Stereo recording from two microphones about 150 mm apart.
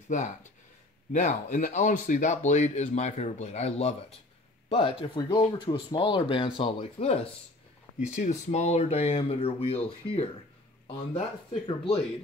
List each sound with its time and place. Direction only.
0.1 s speech: 55° left (ahead or behind); by 7.2 s 40° left (ahead or behind)
8.0 s speech: 50° left (ahead or behind)